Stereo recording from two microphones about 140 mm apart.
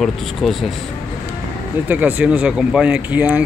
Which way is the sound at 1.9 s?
10° right (ahead or behind).